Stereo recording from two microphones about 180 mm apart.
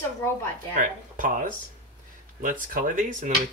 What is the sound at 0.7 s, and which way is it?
Speech, 45° right (ahead or behind).